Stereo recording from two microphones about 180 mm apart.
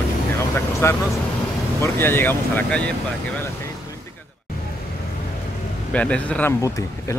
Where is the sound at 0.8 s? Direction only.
15° left (ahead or behind).